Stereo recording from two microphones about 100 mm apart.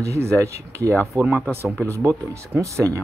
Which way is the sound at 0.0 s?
30° right (ahead or behind).